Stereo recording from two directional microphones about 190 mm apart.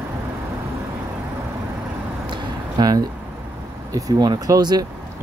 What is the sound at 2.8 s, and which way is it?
Speech, 20° right (ahead or behind).